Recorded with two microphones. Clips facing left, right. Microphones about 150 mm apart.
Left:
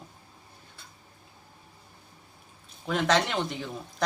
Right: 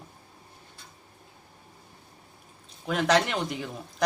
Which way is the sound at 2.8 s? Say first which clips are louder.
Right 1 dB; centre (ahead or behind).